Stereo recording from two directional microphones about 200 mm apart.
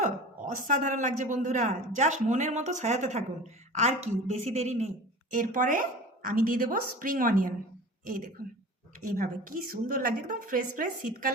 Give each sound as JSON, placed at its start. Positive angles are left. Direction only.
{"t": 0.0, "sound": "a man's voice", "side_deg": -40}
{"t": 9.0, "sound": "a man's voice", "side_deg": -40}